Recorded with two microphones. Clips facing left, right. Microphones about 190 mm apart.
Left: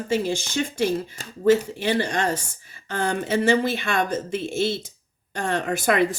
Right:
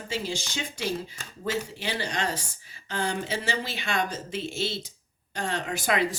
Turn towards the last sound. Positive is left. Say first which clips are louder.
# left 6 dB
turn(degrees=55)  # may be behind; listen again after turning